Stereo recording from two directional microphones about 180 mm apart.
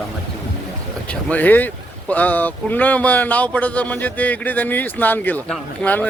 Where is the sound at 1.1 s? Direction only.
5° left (ahead or behind).